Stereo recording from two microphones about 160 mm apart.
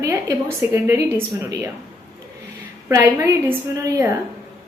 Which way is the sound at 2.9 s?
20° right (ahead or behind).